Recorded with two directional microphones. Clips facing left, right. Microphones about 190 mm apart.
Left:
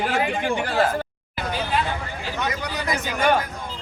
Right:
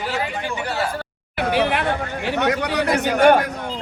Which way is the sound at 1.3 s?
70° right (ahead or behind).